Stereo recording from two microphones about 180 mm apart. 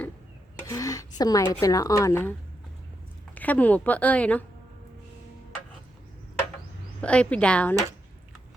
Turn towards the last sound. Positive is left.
turn(degrees=5)  # may be behind; listen again after turning